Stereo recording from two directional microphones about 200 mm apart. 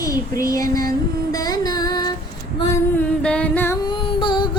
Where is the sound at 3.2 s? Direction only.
5° left (ahead or behind); by 4.5 s 25° left (ahead or behind).